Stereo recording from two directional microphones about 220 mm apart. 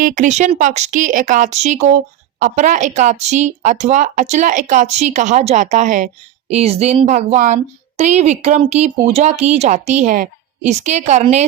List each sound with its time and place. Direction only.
0.0 s a woman's voice: 35° right (ahead or behind)